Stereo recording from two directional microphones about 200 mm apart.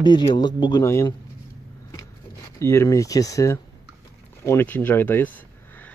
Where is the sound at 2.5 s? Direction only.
15° left (ahead or behind).